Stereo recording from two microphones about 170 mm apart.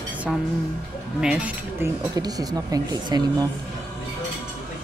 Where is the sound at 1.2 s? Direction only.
5° right (ahead or behind).